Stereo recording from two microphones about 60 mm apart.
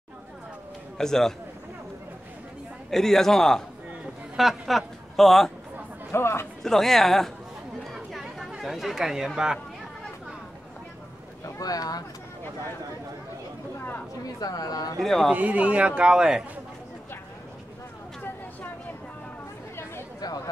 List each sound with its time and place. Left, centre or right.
0.9 s a man's voice: centre
2.9 s a man's voice: centre
6.1 s speech: left
6.6 s speech: centre
7.9 s chatter: centre
11.4 s speech: left
14.2 s a woman's voice: left
15.0 s speech: centre
15.3 s a man's voice: right